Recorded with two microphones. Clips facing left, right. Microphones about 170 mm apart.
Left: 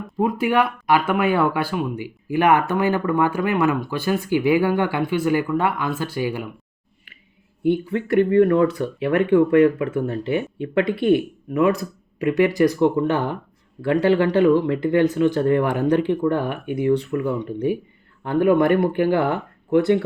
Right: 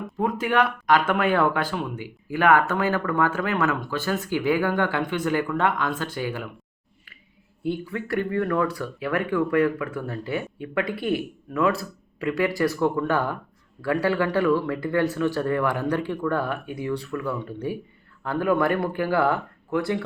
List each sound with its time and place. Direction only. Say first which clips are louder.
0.2 s speech: left 3 dB; 10° left (ahead or behind)
7.6 s speech: left 8 dB; 25° left (ahead or behind)